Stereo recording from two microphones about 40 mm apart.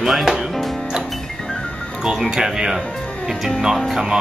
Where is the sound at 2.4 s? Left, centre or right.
Centre.